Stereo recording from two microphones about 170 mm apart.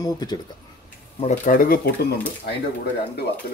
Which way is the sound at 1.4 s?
55° left (ahead or behind).